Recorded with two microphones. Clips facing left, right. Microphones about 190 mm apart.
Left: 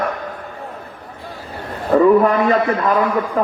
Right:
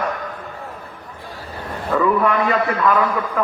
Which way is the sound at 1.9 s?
35° left (ahead or behind).